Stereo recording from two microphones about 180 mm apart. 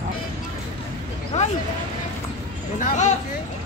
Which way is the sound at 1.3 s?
40° left (ahead or behind).